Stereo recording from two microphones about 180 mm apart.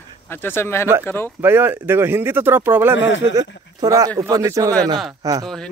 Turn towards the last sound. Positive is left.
turn(degrees=5)  # may be behind; listen again after turning